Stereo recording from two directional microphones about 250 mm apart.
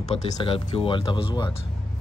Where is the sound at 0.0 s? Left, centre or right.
Centre.